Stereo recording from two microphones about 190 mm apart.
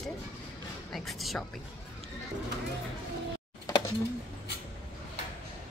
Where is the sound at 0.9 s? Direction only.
Centre (ahead or behind).